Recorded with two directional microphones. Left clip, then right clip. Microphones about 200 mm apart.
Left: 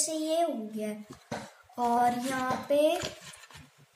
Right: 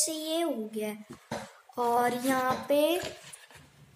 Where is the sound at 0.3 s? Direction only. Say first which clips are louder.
Left 4 dB; 45° right (ahead or behind).